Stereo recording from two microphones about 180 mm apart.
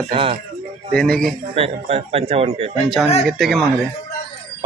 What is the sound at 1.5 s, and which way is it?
Speech, 35° right (ahead or behind).